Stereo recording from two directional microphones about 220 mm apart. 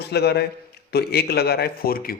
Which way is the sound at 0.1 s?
50° left (ahead or behind).